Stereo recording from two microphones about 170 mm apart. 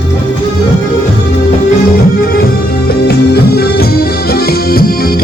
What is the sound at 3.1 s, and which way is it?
Music, 70° left (ahead or behind).